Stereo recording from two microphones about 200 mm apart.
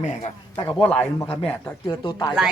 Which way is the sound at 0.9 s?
5° left (ahead or behind).